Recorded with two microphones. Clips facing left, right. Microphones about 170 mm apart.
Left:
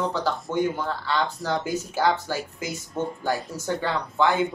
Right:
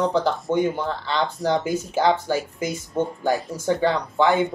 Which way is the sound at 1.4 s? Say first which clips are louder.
Right 4 dB; 20° right (ahead or behind).